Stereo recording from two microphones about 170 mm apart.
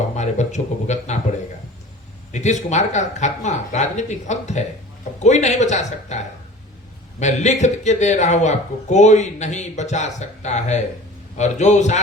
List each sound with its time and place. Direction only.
0.2 s speech: 45° left (ahead or behind)
2.3 s speech: 45° left (ahead or behind)